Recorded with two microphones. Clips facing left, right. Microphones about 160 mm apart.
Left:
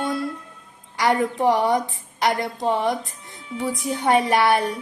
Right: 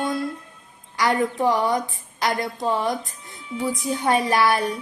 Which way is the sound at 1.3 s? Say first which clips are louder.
Left 2 dB; 25° left (ahead or behind).